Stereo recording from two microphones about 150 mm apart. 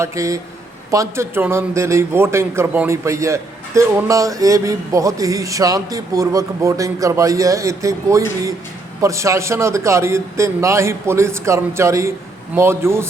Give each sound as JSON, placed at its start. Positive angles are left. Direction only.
{"t": 0.0, "sound": "a man's voice", "side_deg": -20}